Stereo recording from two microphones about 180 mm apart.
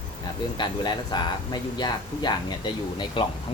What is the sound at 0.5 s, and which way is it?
Speech, 25° left (ahead or behind).